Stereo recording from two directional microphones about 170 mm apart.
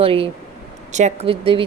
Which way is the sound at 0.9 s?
45° right (ahead or behind).